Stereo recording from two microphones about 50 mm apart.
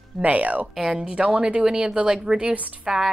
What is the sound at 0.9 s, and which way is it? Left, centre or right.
Speech, right.